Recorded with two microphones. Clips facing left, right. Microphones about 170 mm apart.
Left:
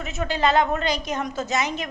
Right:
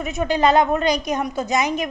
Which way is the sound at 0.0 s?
15° right (ahead or behind).